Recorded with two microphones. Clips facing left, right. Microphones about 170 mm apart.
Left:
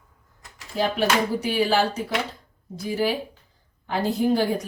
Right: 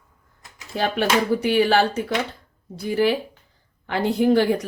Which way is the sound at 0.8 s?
60° right (ahead or behind).